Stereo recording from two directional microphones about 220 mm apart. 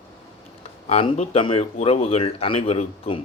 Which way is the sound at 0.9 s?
30° left (ahead or behind).